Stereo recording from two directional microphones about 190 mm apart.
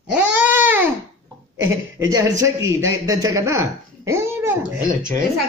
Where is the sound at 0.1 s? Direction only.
10° right (ahead or behind).